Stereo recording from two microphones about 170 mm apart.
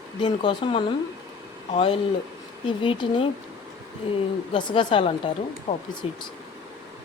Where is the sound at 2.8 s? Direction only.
30° left (ahead or behind).